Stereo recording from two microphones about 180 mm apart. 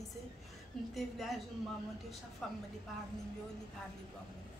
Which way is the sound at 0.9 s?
Centre (ahead or behind).